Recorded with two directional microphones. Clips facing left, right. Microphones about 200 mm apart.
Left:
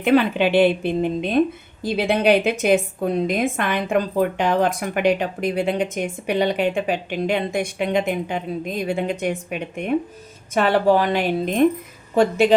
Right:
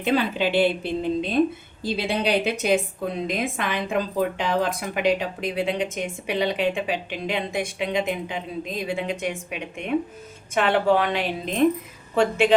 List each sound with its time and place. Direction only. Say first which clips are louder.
0.0 s a woman's voice: left 5 dB; 60° left (ahead or behind)